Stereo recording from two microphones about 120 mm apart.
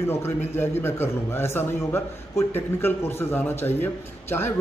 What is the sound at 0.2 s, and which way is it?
A man's voice, 20° left (ahead or behind).